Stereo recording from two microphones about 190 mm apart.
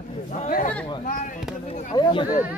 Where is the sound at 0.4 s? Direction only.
40° left (ahead or behind).